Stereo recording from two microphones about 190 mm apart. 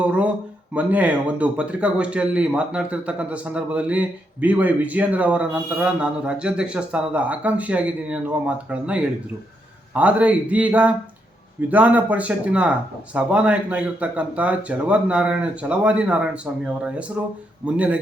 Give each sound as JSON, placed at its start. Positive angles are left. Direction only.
{"t": 0.0, "sound": "speech", "side_deg": -5}